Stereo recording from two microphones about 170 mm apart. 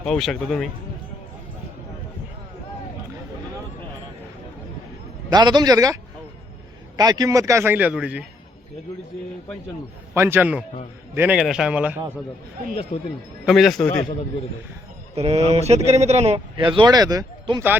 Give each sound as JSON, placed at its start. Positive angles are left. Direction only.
{"t": 0.0, "sound": "a man's voice", "side_deg": 5}
{"t": 5.3, "sound": "a man's voice", "side_deg": -25}
{"t": 10.2, "sound": "a man's voice", "side_deg": -15}
{"t": 12.9, "sound": "a man's voice", "side_deg": 35}
{"t": 13.4, "sound": "a man's voice", "side_deg": 0}
{"t": 15.1, "sound": "speech", "side_deg": -35}